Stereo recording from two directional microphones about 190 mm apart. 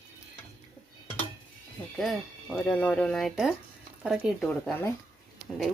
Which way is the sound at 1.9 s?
Centre (ahead or behind).